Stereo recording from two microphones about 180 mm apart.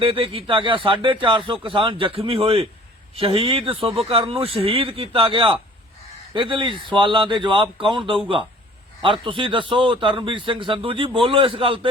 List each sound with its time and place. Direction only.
0.0 s a man's voice: 30° right (ahead or behind)